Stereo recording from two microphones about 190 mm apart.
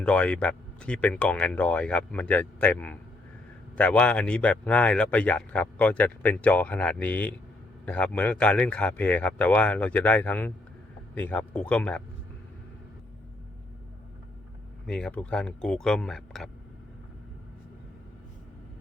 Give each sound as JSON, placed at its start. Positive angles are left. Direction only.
{"t": 0.0, "sound": "speech", "side_deg": 5}
{"t": 14.8, "sound": "speech", "side_deg": 5}